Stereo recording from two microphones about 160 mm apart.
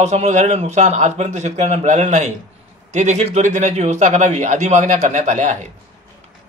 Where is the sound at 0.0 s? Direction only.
45° right (ahead or behind).